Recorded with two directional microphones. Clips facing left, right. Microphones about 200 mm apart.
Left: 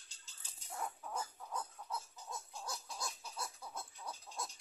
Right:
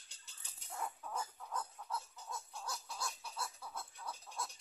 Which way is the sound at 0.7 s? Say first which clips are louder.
Even; 10° left (ahead or behind).